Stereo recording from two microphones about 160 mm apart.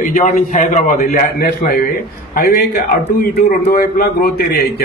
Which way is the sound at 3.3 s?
80° left.